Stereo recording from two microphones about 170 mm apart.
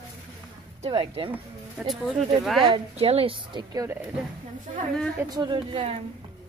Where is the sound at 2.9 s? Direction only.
35° right (ahead or behind).